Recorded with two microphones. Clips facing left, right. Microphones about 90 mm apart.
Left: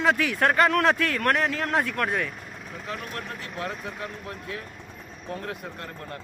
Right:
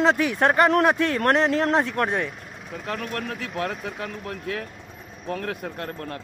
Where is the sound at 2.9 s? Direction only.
70° right (ahead or behind).